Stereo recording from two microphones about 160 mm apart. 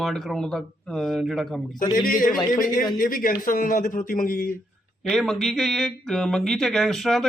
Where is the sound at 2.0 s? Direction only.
60° left (ahead or behind).